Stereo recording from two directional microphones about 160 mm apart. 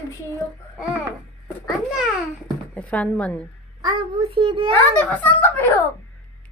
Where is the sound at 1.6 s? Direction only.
5° right (ahead or behind).